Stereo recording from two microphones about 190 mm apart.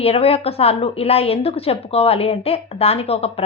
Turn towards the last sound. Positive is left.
turn(degrees=30)  # may be behind; listen again after turning